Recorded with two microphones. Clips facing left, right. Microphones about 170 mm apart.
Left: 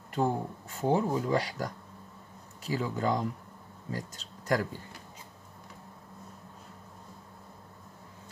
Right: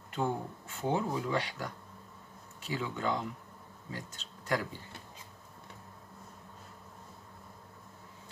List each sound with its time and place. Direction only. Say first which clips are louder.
0.1 s speech: left 4 dB; 40° left (ahead or behind)